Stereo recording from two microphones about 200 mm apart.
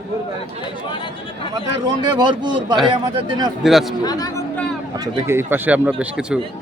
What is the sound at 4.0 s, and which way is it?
Speech, 20° left (ahead or behind).